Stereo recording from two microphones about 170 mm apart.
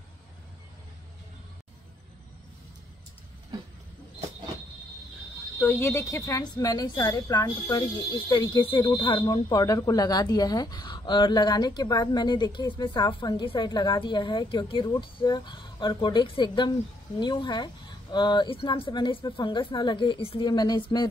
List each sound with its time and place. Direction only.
5.6 s speech: 15° left (ahead or behind)